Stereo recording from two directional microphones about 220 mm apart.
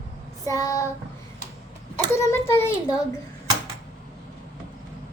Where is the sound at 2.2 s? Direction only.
10° left (ahead or behind).